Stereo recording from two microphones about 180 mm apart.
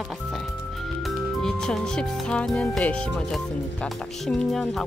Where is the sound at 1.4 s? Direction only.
5° left (ahead or behind).